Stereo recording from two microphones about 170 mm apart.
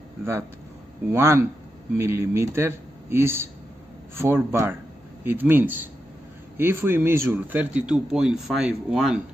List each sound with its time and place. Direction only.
1.1 s speech: 15° right (ahead or behind)